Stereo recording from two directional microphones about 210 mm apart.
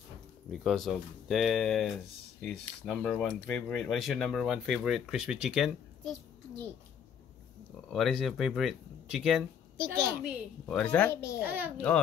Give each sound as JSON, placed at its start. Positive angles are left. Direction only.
{"t": 0.5, "sound": "speech", "side_deg": 0}
{"t": 7.9, "sound": "speech", "side_deg": 0}
{"t": 10.8, "sound": "speech", "side_deg": 5}
{"t": 11.4, "sound": "a child's voice", "side_deg": -10}
{"t": 11.7, "sound": "speech", "side_deg": 5}